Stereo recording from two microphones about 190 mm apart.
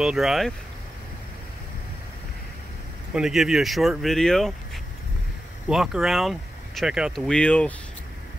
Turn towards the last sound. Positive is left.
turn(degrees=5)  # may be behind; listen again after turning